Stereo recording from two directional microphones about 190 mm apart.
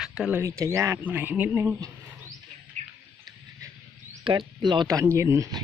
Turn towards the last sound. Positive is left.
turn(degrees=-15)  # may be behind; listen again after turning